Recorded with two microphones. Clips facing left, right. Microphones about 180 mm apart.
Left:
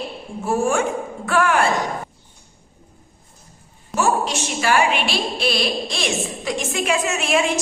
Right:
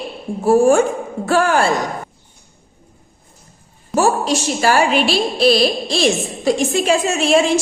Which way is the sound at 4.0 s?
35° right (ahead or behind).